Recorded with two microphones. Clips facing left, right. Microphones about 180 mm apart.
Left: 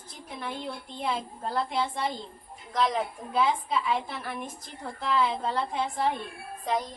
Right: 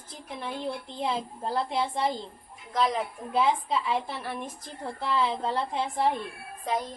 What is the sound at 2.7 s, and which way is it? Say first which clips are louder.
Speech: even; centre (ahead or behind).